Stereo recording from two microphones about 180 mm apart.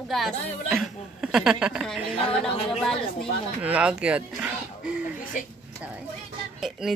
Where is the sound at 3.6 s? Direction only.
5° right (ahead or behind).